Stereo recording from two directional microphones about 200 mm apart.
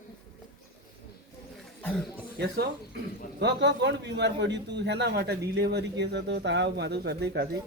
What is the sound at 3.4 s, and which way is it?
Speech, 60° right (ahead or behind).